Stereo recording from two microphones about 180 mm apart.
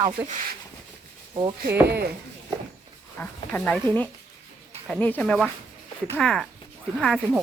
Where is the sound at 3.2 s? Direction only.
10° left (ahead or behind).